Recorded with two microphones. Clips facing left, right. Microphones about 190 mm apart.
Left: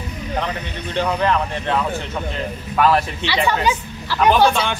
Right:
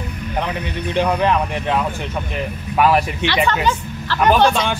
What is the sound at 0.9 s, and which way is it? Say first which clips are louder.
Speech: right 2 dB; 15° right (ahead or behind).